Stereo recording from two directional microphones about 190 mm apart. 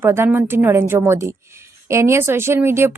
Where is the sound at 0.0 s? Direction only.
10° right (ahead or behind).